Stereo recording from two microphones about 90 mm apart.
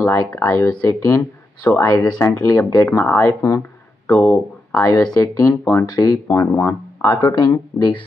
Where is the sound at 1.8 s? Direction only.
45° left (ahead or behind).